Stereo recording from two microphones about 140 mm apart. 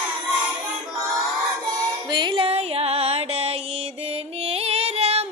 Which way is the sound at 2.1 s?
35° right (ahead or behind).